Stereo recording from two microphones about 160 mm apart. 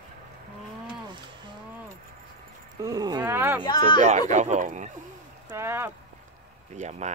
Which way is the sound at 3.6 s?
30° left (ahead or behind).